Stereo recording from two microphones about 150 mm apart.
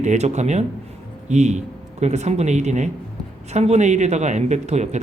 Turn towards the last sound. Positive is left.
turn(degrees=-50)  # may be behind; listen again after turning